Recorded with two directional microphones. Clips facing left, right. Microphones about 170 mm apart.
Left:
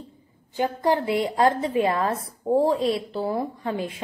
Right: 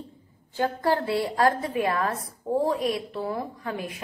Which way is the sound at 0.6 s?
20° left (ahead or behind).